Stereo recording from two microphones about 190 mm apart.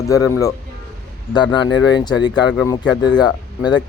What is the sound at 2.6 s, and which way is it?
A man's voice, 20° left (ahead or behind).